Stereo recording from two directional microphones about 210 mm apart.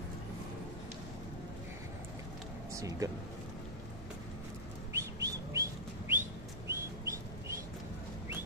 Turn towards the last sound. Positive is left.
turn(degrees=-15)  # may be behind; listen again after turning